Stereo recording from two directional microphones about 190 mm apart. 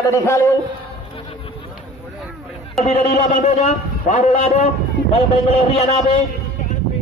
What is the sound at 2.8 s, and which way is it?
A man's voice, 35° left (ahead or behind).